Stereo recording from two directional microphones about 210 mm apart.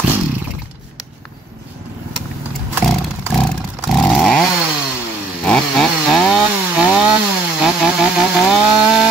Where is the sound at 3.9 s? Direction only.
5° left (ahead or behind).